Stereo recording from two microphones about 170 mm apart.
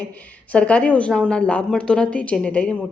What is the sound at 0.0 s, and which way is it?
A woman's voice, 10° left (ahead or behind).